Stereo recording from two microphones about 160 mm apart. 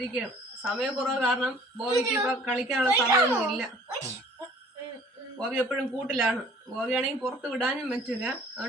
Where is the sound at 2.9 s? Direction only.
15° right (ahead or behind).